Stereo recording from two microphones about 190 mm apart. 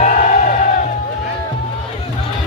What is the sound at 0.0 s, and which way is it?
Crowd, 40° left (ahead or behind).